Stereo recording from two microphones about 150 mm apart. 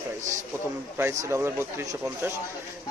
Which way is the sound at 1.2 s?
15° right (ahead or behind).